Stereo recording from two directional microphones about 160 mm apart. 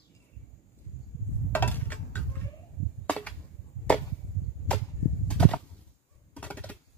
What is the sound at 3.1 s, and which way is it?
Chop, 10° left (ahead or behind).